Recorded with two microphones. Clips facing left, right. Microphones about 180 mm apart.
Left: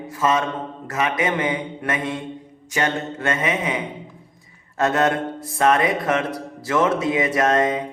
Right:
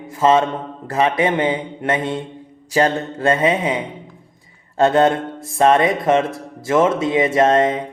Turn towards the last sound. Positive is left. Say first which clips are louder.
# right 4 dB
turn(degrees=-25)  # may be behind; listen again after turning